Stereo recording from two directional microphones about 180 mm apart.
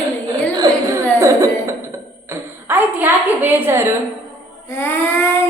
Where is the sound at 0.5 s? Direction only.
20° right (ahead or behind).